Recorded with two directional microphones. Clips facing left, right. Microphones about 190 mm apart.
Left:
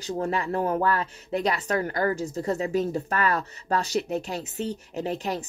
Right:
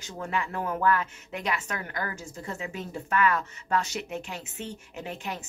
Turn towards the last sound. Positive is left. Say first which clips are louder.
# left 7 dB
turn(degrees=35)  # may be behind; listen again after turning